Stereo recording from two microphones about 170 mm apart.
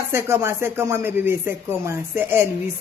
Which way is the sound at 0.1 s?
15° right (ahead or behind).